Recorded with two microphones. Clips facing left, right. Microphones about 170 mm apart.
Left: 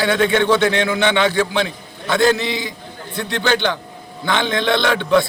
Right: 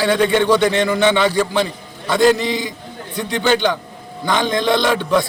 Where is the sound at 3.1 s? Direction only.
10° right (ahead or behind).